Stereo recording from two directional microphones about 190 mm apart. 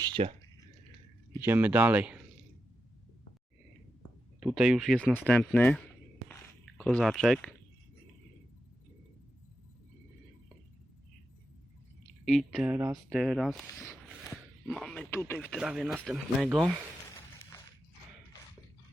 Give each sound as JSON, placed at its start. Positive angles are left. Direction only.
{"t": 0.0, "sound": "speech", "side_deg": -30}
{"t": 1.4, "sound": "speech", "side_deg": -10}
{"t": 4.4, "sound": "speech", "side_deg": -5}
{"t": 12.2, "sound": "speech", "side_deg": 0}
{"t": 14.7, "sound": "speech", "side_deg": 5}